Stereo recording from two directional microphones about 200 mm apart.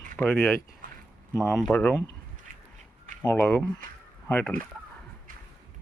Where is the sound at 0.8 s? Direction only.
45° right (ahead or behind).